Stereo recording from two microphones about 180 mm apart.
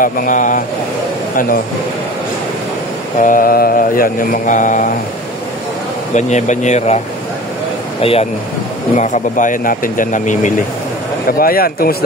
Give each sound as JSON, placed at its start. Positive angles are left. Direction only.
{"t": 0.0, "sound": "mantra", "side_deg": 50}
{"t": 1.3, "sound": "speech", "side_deg": 50}
{"t": 3.2, "sound": "mantra", "side_deg": 50}
{"t": 6.1, "sound": "speech", "side_deg": 40}
{"t": 8.0, "sound": "speech", "side_deg": 30}
{"t": 8.9, "sound": "mantra", "side_deg": 45}
{"t": 11.3, "sound": "speech", "side_deg": 55}